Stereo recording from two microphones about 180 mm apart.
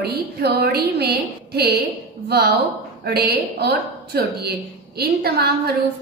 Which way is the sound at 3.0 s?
65° right (ahead or behind).